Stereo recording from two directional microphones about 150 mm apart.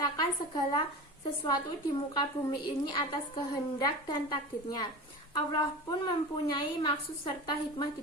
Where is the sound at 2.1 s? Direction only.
30° left (ahead or behind).